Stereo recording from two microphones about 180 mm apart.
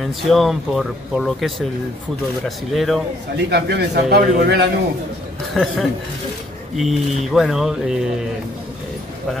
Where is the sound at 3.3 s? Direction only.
65° right (ahead or behind).